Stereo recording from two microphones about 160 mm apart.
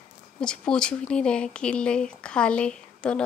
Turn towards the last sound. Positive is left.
turn(degrees=5)  # may be behind; listen again after turning